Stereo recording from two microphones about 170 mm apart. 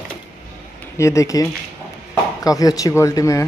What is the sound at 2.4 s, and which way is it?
Speech, 20° left (ahead or behind).